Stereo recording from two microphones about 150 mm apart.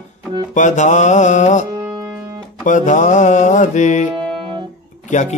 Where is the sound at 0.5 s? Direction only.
55° left (ahead or behind).